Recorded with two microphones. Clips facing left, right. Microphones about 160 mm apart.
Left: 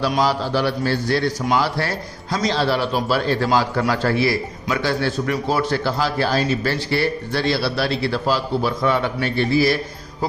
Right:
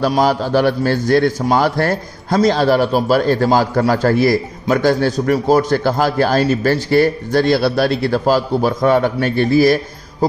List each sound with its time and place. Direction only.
0.2 s a man's voice: 50° right (ahead or behind)